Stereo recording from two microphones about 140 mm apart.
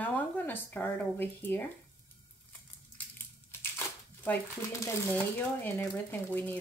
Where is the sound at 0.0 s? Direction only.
15° left (ahead or behind).